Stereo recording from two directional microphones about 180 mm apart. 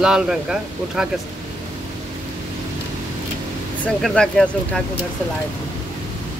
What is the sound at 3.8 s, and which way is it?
Speech, 5° left (ahead or behind).